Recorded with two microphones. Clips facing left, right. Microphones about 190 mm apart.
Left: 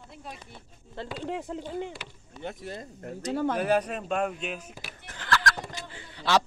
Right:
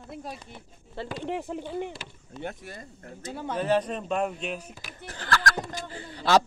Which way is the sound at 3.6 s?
10° left (ahead or behind).